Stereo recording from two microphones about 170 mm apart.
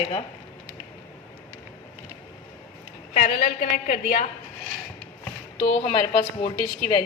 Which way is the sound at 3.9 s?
55° left (ahead or behind).